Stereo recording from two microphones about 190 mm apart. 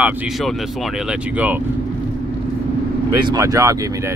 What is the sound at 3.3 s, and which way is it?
Speech, 15° right (ahead or behind).